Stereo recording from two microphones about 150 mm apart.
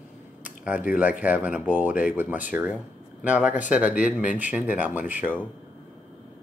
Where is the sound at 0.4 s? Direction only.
10° right (ahead or behind).